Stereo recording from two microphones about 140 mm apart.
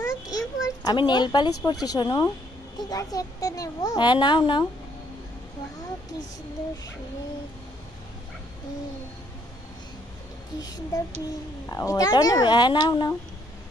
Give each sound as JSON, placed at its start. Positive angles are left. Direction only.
{"t": 0.0, "sound": "a sound", "side_deg": 25}
{"t": 1.7, "sound": "a woman's voice", "side_deg": 30}
{"t": 10.9, "sound": "a woman's voice", "side_deg": 25}